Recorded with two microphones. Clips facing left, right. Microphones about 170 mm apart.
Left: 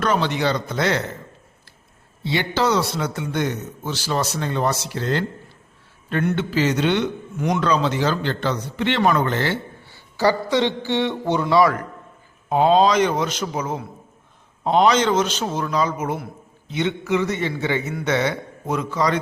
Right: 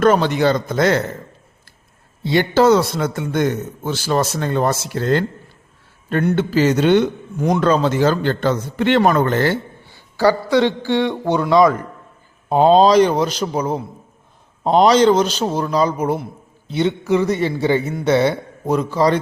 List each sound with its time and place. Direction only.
0.0 s a man's voice: 45° right (ahead or behind)
2.2 s a man's voice: 50° right (ahead or behind)
9.8 s a man's voice: 15° right (ahead or behind)
12.5 s a man's voice: 35° right (ahead or behind)